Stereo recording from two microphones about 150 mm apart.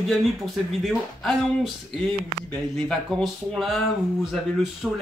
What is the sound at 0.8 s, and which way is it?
Speech, centre (ahead or behind).